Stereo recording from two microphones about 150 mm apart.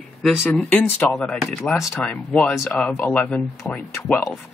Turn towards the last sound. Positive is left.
turn(degrees=15)  # may be behind; listen again after turning